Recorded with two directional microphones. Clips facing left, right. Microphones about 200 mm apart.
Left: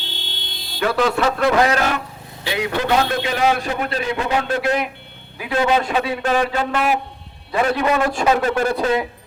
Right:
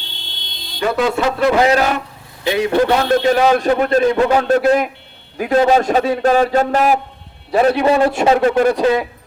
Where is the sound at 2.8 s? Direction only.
45° right (ahead or behind).